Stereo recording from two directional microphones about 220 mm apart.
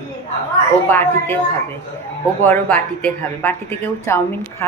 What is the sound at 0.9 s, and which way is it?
Speech, 10° left (ahead or behind).